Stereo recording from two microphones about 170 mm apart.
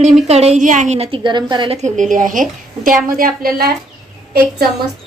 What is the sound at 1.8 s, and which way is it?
A woman's voice, 45° right (ahead or behind).